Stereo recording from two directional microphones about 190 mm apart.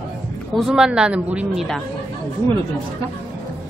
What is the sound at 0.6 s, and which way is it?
Speech, centre (ahead or behind).